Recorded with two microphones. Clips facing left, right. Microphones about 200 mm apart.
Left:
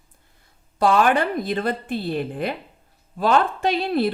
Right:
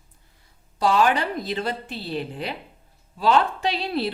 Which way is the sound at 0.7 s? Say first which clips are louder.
Left 2 dB; 55° left (ahead or behind).